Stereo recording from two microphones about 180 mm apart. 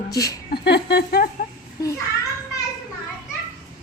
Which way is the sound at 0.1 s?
20° left (ahead or behind).